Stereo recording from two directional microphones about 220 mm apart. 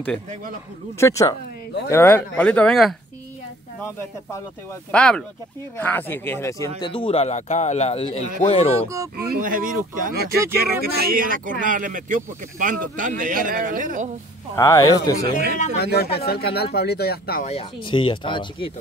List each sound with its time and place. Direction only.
0.9 s speech: 15° left (ahead or behind)
4.9 s speech: 5° left (ahead or behind)
6.8 s speech: 20° left (ahead or behind)
8.9 s speech: 15° right (ahead or behind)
9.3 s speech: 40° right (ahead or behind)
14.5 s speech: 15° left (ahead or behind)
15.8 s speech: 45° left (ahead or behind)
17.5 s speech: 25° left (ahead or behind)